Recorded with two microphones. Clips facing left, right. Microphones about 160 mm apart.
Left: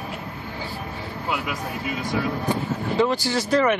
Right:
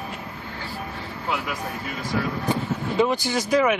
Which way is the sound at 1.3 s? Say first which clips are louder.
Even; centre (ahead or behind).